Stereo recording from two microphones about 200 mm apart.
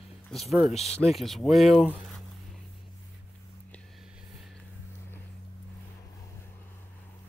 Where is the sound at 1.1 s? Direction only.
Centre (ahead or behind).